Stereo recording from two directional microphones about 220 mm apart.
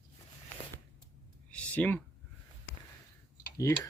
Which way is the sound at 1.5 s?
5° left (ahead or behind).